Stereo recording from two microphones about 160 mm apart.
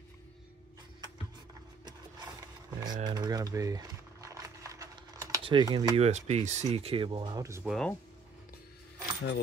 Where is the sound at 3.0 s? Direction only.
25° right (ahead or behind).